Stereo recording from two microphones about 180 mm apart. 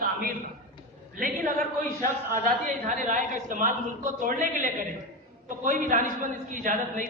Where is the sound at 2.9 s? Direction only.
45° right (ahead or behind).